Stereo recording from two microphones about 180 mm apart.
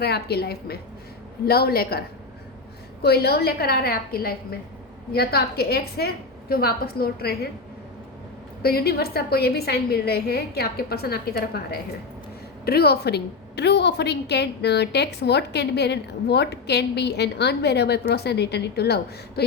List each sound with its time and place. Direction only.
0.0 s a woman's voice: 60° left (ahead or behind)
8.6 s a woman's voice: 60° left (ahead or behind)